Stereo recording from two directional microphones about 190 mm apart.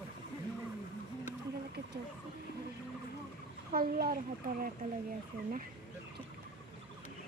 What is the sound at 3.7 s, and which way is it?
Speech, 50° right (ahead or behind).